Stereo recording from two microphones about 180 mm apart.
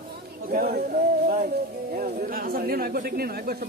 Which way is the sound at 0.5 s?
50° right (ahead or behind).